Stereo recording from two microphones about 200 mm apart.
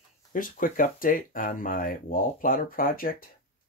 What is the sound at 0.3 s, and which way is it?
Speech, 45° left (ahead or behind).